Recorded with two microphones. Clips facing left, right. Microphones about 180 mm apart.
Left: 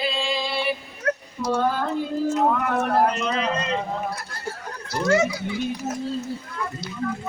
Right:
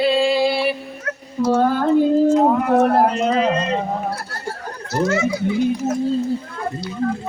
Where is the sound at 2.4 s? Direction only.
35° right (ahead or behind).